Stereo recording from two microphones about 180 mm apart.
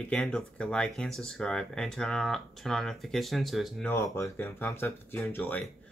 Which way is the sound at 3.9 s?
15° left (ahead or behind).